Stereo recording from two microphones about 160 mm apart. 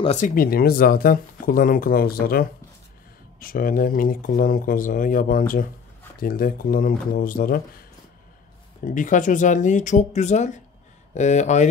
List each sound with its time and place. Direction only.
0.0 s speech: 45° left (ahead or behind)
0.3 s speech: 65° left (ahead or behind)
8.8 s speech: 55° left (ahead or behind)